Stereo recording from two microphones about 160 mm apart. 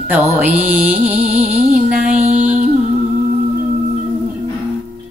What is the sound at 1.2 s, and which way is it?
Music, 55° right (ahead or behind).